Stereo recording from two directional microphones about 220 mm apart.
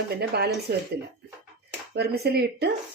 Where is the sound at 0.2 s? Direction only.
45° right (ahead or behind).